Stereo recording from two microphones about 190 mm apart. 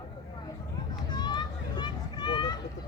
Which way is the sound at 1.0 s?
20° left (ahead or behind).